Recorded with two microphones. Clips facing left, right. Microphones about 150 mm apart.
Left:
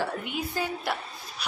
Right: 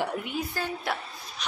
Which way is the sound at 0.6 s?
15° left (ahead or behind).